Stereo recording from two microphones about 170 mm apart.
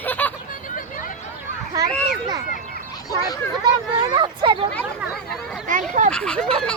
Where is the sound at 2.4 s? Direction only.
50° left (ahead or behind).